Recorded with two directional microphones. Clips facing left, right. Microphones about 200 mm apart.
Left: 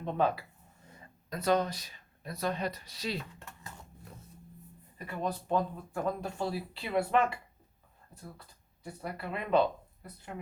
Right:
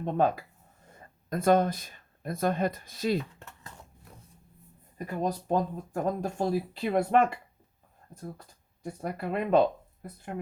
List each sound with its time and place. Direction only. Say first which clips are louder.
0.0 s speech: right 4 dB; 45° right (ahead or behind)
4.9 s speech: right 4 dB; 45° right (ahead or behind)